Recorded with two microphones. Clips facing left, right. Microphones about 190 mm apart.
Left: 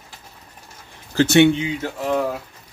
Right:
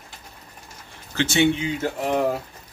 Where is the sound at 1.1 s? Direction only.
35° left (ahead or behind).